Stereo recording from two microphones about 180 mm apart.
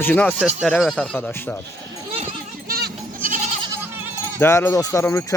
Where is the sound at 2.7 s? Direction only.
55° right (ahead or behind).